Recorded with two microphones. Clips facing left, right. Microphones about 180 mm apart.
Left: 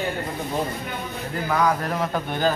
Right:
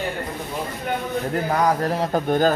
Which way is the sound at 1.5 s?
35° right (ahead or behind).